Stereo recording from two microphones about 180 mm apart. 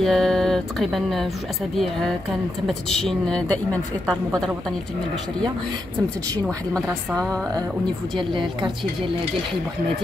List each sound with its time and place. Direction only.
0.0 s music: centre (ahead or behind)
1.8 s a woman's voice: centre (ahead or behind)
6.4 s a woman's voice: 5° left (ahead or behind)
8.2 s a woman's voice: 25° right (ahead or behind)